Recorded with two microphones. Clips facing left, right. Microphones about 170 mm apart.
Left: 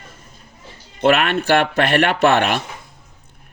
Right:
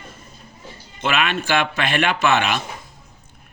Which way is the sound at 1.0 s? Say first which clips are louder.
Left 6 dB; 60° left (ahead or behind).